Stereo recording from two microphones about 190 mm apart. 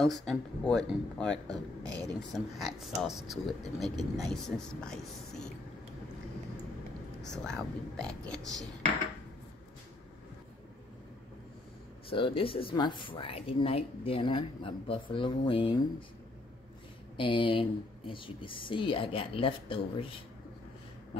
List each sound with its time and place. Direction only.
0.0 s speech: centre (ahead or behind)
7.2 s speech: 5° left (ahead or behind)
12.1 s speech: 30° left (ahead or behind)
17.2 s speech: 25° left (ahead or behind)